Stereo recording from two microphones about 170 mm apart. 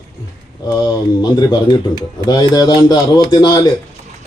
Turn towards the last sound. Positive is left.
turn(degrees=25)  # may be behind; listen again after turning